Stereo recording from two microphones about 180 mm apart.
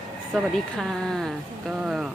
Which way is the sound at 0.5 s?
Centre (ahead or behind).